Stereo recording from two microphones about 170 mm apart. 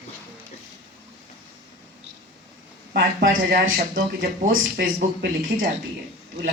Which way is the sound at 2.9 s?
65° right (ahead or behind).